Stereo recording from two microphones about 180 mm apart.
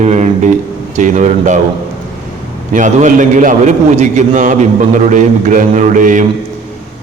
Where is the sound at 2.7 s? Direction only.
45° right (ahead or behind).